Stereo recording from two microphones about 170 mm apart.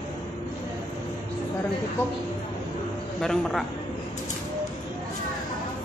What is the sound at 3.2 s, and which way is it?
Speech, centre (ahead or behind).